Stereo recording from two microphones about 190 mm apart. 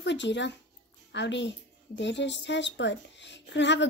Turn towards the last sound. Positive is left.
turn(degrees=70)  # may be behind; listen again after turning